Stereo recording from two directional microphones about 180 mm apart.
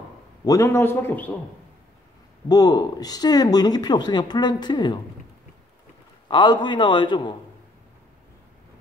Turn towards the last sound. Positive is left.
turn(degrees=25)  # may be behind; listen again after turning